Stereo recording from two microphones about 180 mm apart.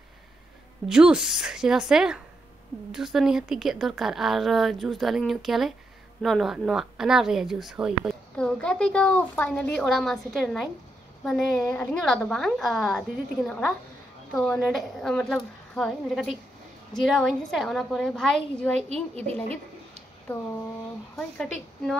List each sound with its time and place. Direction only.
0.8 s a woman's voice: 5° right (ahead or behind)
18.8 s a woman's voice: 35° right (ahead or behind)